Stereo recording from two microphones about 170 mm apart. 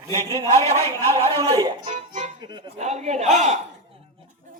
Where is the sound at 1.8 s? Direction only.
45° right (ahead or behind).